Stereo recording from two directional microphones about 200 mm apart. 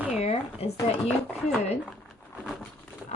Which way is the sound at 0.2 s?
30° left (ahead or behind).